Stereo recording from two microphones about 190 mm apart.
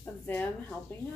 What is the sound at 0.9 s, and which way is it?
Speech, 10° left (ahead or behind).